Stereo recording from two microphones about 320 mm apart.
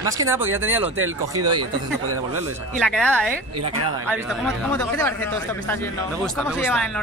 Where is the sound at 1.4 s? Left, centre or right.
Right.